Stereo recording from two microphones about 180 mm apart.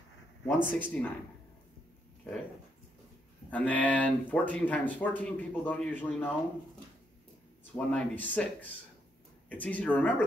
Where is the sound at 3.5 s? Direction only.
10° left (ahead or behind).